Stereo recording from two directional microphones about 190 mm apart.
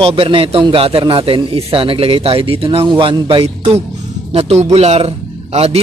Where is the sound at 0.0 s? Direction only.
30° right (ahead or behind).